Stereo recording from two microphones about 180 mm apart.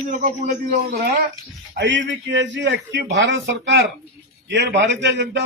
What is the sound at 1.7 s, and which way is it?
A man's voice, 85° right.